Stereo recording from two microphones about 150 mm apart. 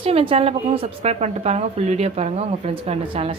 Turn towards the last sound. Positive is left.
turn(degrees=-40)  # may be behind; listen again after turning